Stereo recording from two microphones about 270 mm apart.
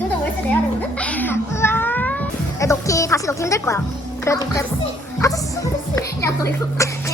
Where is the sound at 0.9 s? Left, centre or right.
Centre.